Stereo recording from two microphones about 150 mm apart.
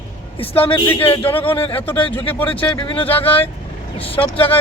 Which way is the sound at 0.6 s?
30° left (ahead or behind).